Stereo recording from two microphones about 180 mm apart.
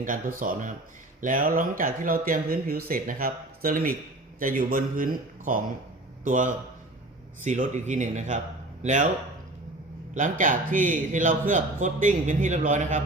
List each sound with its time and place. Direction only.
0.0 s a man's voice: 50° right (ahead or behind)
10.2 s a man's voice: 45° right (ahead or behind)